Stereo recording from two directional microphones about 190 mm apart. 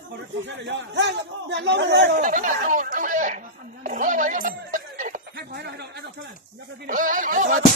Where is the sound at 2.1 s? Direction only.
45° right (ahead or behind).